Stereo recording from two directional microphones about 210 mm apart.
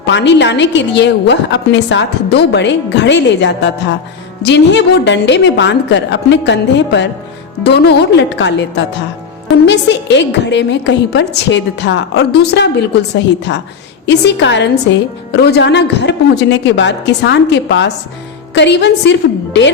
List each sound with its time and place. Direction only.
0.0 s a woman's voice: 55° left (ahead or behind)